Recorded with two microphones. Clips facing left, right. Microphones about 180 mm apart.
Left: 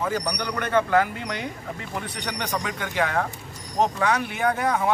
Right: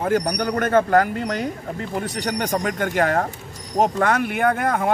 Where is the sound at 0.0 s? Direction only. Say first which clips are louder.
Right 6 dB; 50° right (ahead or behind).